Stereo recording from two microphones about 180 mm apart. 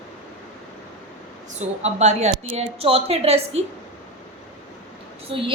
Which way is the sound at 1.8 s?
40° right (ahead or behind).